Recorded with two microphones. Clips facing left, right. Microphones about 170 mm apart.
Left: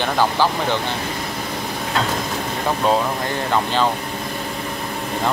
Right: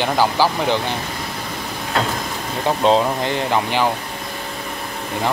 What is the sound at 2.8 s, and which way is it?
Speech, 25° right (ahead or behind).